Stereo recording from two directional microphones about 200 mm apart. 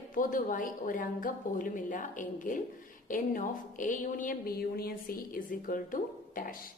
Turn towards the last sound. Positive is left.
turn(degrees=45)  # may be behind; listen again after turning